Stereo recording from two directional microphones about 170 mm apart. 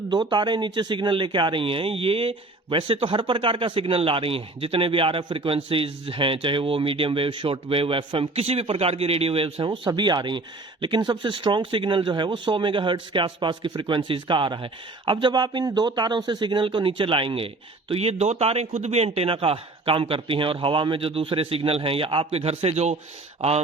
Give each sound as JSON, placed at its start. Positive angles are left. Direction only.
{"t": 0.1, "sound": "speech", "side_deg": -25}